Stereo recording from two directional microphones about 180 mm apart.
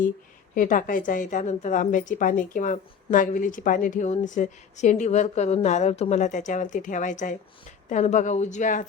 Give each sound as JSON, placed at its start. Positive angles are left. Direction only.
{"t": 0.5, "sound": "a woman's voice", "side_deg": 50}